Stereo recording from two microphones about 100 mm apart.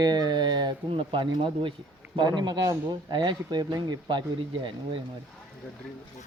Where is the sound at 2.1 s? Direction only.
45° right (ahead or behind).